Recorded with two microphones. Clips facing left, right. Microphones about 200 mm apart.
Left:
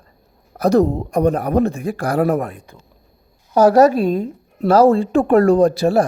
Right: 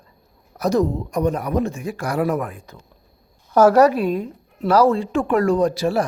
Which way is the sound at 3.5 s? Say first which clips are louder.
Left 2 dB; 35° left (ahead or behind).